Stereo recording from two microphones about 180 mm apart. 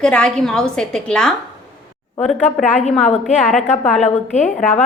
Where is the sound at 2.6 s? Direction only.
40° left (ahead or behind).